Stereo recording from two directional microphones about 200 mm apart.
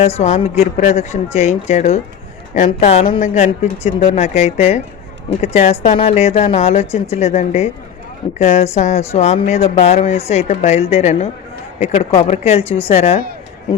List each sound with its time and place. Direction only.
0.0 s speech: 30° left (ahead or behind)